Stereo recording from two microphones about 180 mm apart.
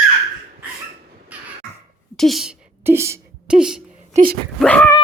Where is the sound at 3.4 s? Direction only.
5° right (ahead or behind).